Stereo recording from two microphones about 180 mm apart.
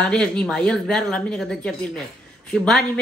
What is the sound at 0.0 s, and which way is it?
A man's voice, 5° left (ahead or behind).